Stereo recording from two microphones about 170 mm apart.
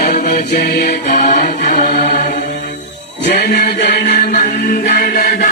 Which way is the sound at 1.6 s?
50° left (ahead or behind).